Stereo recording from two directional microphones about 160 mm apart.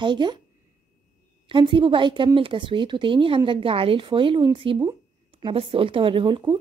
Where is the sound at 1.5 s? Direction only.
30° right (ahead or behind).